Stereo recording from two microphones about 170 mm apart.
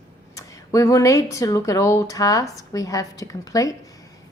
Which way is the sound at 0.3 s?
20° left (ahead or behind).